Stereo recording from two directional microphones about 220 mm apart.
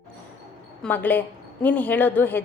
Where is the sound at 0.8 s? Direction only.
10° left (ahead or behind).